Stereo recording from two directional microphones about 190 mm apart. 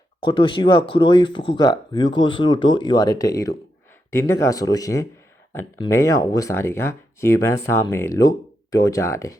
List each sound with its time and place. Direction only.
0.2 s speech: 25° left (ahead or behind)